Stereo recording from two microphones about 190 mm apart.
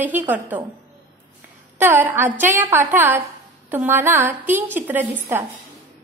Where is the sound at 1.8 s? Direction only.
10° right (ahead or behind).